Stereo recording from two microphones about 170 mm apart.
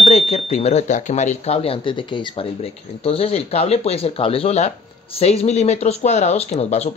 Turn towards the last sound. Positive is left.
turn(degrees=40)  # may be behind; listen again after turning